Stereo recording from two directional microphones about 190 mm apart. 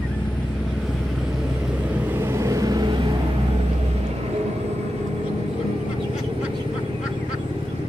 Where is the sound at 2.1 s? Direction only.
10° right (ahead or behind).